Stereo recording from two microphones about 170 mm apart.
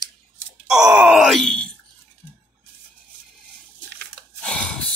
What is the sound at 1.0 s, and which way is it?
Speech, 5° right (ahead or behind).